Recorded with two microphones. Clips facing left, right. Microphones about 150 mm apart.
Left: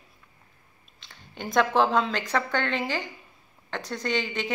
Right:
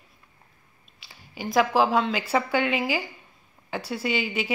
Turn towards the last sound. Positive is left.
turn(degrees=-10)  # may be behind; listen again after turning